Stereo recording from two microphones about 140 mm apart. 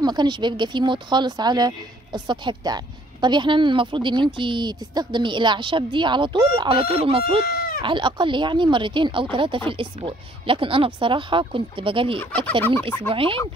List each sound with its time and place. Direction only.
0.0 s speech: 30° right (ahead or behind)
7.4 s goat: 90° left
7.8 s speech: 35° right (ahead or behind)
12.2 s fowl: 10° left (ahead or behind)
13.1 s speech: 40° right (ahead or behind)